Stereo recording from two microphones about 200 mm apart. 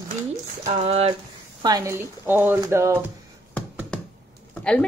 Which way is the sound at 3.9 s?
5° left (ahead or behind).